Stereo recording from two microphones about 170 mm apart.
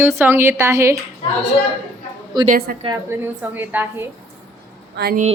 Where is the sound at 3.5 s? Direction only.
10° right (ahead or behind).